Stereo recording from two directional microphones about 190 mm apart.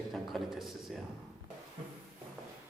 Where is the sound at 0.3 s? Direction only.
Centre (ahead or behind).